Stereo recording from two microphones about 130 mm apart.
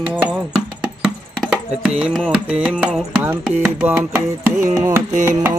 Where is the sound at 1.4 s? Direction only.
5° right (ahead or behind).